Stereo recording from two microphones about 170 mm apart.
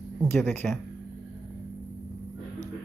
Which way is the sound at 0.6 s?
Centre (ahead or behind).